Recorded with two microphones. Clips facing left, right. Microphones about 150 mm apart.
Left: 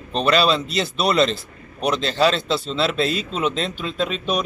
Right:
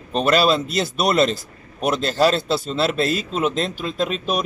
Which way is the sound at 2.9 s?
45° right (ahead or behind).